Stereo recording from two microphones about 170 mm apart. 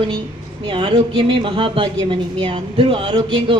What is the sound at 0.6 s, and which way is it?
Speech, 25° right (ahead or behind).